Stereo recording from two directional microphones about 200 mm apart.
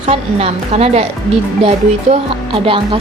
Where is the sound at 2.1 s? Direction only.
25° right (ahead or behind).